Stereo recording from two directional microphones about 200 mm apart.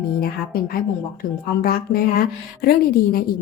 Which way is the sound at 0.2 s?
50° left (ahead or behind).